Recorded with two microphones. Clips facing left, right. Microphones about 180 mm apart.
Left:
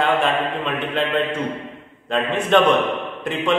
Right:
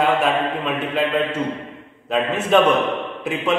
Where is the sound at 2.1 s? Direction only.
5° right (ahead or behind).